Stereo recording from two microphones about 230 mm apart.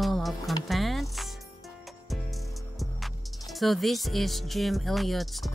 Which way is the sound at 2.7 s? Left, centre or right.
Centre.